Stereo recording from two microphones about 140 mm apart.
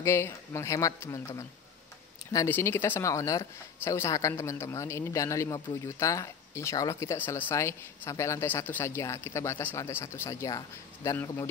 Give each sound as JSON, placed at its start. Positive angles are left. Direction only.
{"t": 0.0, "sound": "speech", "side_deg": 20}